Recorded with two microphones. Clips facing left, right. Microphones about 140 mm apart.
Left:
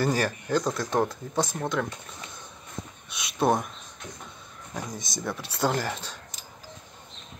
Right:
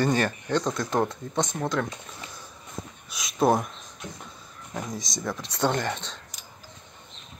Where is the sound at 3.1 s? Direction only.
Centre (ahead or behind).